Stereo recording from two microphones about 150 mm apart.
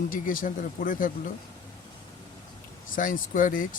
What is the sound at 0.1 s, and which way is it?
Speech, 65° left (ahead or behind).